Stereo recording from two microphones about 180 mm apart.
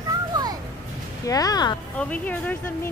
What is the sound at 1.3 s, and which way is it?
Speech, 20° left (ahead or behind).